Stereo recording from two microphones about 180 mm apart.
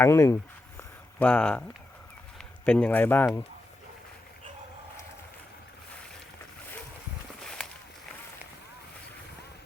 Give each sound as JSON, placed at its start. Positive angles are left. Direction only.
{"t": 0.0, "sound": "speech", "side_deg": 15}
{"t": 0.8, "sound": "a sound", "side_deg": 5}
{"t": 2.6, "sound": "speech", "side_deg": 10}